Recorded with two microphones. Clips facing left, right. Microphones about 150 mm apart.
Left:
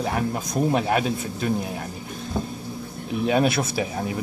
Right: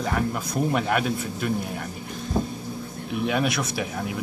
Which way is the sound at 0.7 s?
25° left (ahead or behind).